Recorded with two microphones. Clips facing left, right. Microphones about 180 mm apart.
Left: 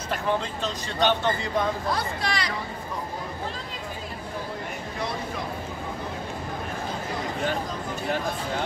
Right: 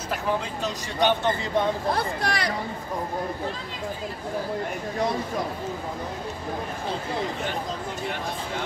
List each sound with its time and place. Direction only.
0.9 s speech: 15° right (ahead or behind)
2.0 s speech: 55° right (ahead or behind)